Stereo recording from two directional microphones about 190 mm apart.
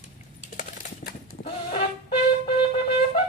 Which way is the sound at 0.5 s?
50° left (ahead or behind).